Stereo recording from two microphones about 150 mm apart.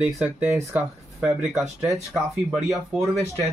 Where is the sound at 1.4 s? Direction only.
Centre (ahead or behind).